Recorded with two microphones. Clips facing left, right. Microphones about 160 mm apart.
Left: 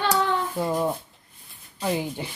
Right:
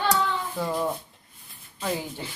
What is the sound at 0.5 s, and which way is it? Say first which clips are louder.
Speech: left 3 dB; 20° left (ahead or behind).